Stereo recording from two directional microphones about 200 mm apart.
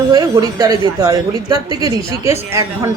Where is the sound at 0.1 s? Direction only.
20° right (ahead or behind).